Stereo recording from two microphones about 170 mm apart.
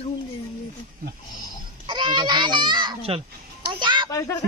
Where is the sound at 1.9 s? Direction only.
25° right (ahead or behind).